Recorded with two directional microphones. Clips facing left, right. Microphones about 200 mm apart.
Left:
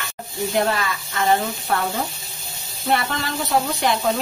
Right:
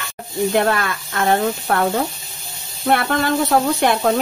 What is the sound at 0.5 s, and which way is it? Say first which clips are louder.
Speech: right 1 dB; 60° right (ahead or behind).